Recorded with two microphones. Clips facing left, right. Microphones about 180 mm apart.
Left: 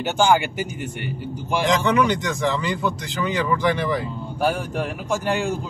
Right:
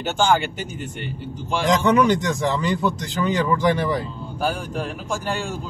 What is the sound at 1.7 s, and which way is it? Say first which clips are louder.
Speech: right 3 dB; 40° right (ahead or behind).